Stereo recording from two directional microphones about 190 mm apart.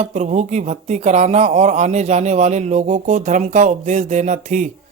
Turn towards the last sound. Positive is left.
turn(degrees=-40)  # may be behind; listen again after turning